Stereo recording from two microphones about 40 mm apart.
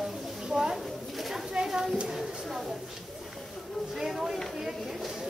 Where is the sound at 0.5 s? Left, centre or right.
Centre.